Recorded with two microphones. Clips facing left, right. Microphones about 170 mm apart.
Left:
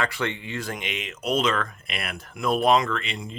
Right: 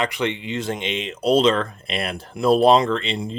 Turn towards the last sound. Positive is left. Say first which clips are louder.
# right 7 dB
turn(degrees=-30)  # may be behind; listen again after turning